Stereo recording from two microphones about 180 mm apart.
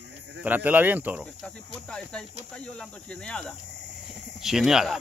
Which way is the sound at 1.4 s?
5° left (ahead or behind).